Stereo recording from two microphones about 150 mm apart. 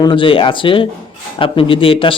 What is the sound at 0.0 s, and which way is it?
Speech, 35° left (ahead or behind).